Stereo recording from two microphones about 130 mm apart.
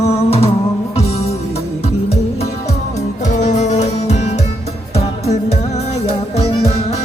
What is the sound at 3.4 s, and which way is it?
Music, 65° left (ahead or behind).